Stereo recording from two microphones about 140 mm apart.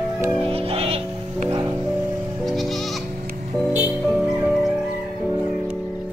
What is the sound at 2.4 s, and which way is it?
Music, centre (ahead or behind).